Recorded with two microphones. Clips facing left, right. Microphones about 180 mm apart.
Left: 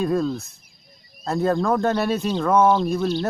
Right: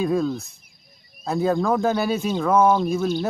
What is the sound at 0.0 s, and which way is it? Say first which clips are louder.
Speech: even; centre (ahead or behind).